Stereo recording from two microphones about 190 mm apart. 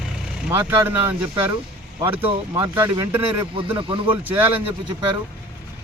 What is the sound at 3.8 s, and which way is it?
Speech, 25° right (ahead or behind).